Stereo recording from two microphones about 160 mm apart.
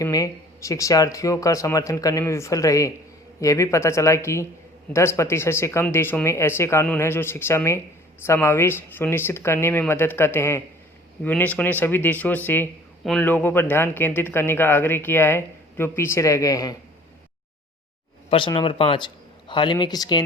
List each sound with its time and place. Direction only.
0.0 s speech: 20° left (ahead or behind)
18.3 s speech: 30° left (ahead or behind)